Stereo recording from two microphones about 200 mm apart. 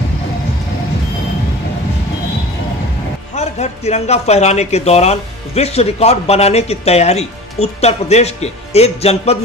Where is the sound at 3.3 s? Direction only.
35° left (ahead or behind).